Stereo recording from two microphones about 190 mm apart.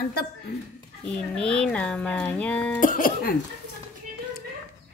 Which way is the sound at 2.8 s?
45° left (ahead or behind).